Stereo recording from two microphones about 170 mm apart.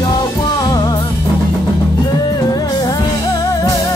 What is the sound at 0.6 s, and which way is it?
Music, 25° left (ahead or behind).